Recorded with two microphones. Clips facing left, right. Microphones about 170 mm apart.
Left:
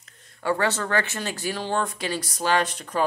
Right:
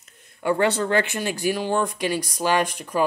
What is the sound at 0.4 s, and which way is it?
Speech, 15° right (ahead or behind).